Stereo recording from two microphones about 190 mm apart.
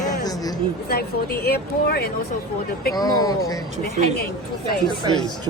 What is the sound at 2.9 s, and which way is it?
Speech, 20° left (ahead or behind).